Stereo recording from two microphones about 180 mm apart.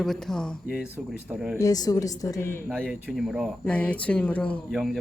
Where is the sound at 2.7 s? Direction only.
5° right (ahead or behind).